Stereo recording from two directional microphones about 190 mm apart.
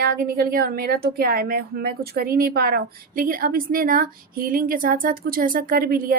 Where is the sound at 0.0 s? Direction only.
50° right (ahead or behind).